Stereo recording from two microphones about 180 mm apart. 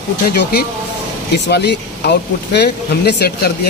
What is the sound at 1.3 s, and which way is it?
Speech, 65° left (ahead or behind).